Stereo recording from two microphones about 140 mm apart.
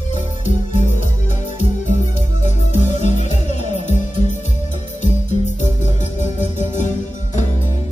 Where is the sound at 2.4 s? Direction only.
55° left (ahead or behind).